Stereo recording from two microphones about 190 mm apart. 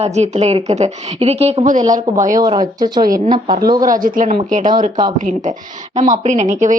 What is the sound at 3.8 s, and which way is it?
Speech, 45° right (ahead or behind).